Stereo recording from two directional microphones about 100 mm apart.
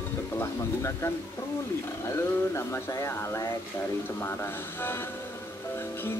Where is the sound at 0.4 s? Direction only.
30° left (ahead or behind).